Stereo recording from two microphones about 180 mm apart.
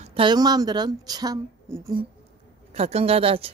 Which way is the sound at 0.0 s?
30° right (ahead or behind).